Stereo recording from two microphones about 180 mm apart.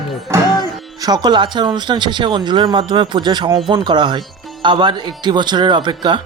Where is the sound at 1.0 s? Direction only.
25° right (ahead or behind).